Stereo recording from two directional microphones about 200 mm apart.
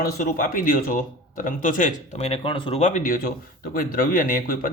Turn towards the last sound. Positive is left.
turn(degrees=45)  # may be behind; listen again after turning